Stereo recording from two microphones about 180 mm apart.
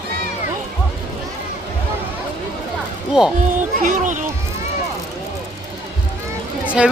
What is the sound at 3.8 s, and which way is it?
Speech, 45° right (ahead or behind).